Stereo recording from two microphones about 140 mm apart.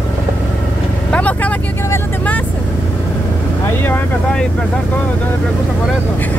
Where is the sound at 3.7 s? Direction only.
15° left (ahead or behind).